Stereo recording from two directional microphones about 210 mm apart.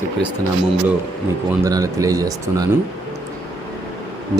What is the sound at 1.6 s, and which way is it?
Speech, 15° right (ahead or behind).